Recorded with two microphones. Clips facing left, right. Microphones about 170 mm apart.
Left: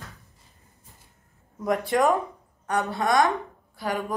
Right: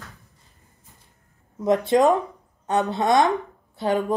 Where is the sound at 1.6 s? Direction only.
20° right (ahead or behind).